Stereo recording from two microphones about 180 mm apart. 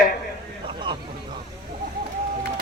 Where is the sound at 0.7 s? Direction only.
25° right (ahead or behind).